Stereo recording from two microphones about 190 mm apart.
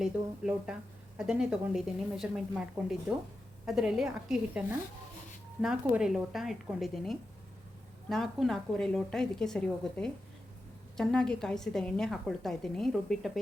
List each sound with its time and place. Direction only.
0.0 s speech: 5° right (ahead or behind)
5.6 s speech: 5° right (ahead or behind)